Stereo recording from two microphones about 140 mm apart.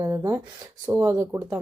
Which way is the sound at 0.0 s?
25° right (ahead or behind).